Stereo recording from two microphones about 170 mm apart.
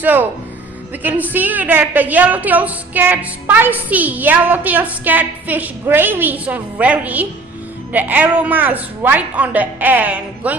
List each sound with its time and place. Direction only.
0.0 s a woman's voice: 10° right (ahead or behind)